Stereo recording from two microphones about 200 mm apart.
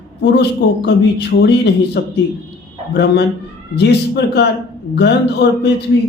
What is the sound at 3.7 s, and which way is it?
Speech, 55° left (ahead or behind).